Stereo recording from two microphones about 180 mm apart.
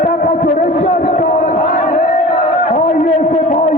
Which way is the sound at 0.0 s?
45° left (ahead or behind).